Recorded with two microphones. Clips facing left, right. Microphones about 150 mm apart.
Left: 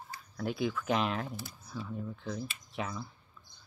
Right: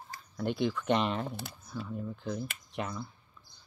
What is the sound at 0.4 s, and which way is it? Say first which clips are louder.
Speech: right 2 dB; centre (ahead or behind).